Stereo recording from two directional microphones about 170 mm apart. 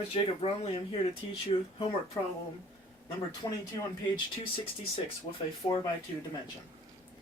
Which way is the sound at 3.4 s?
20° left (ahead or behind).